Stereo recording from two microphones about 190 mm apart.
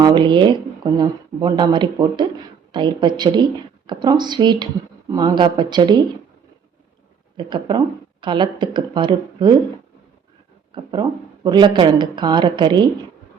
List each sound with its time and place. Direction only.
0.0 s speech: 25° right (ahead or behind)
7.3 s speech: 25° right (ahead or behind)
10.7 s a sound: 25° right (ahead or behind)
11.4 s speech: 25° right (ahead or behind)